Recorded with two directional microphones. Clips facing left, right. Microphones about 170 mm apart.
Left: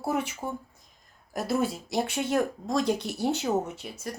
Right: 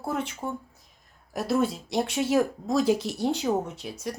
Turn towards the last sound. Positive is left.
turn(degrees=0)  # may be behind; listen again after turning